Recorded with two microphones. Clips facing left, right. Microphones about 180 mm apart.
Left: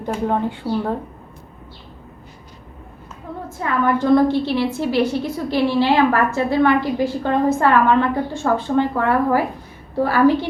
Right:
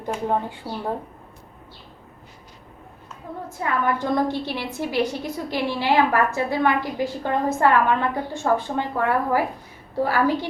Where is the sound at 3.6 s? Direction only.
15° right (ahead or behind).